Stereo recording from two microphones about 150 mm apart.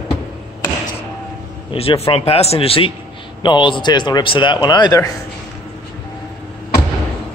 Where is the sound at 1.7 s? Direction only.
40° left (ahead or behind).